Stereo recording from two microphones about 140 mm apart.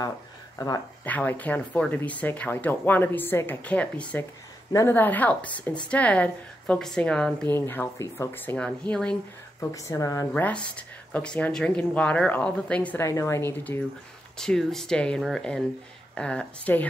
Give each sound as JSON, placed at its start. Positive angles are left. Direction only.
{"t": 1.0, "sound": "speech", "side_deg": 10}
{"t": 7.5, "sound": "speech", "side_deg": 15}
{"t": 9.6, "sound": "a woman's voice", "side_deg": 20}
{"t": 10.3, "sound": "speech", "side_deg": 10}
{"t": 13.0, "sound": "a woman's voice", "side_deg": 20}
{"t": 14.4, "sound": "speech", "side_deg": 5}